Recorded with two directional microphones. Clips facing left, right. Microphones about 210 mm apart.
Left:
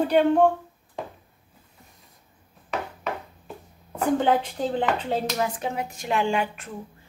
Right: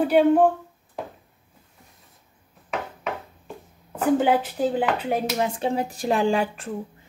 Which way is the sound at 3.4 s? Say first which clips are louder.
Right 1 dB; 5° right (ahead or behind).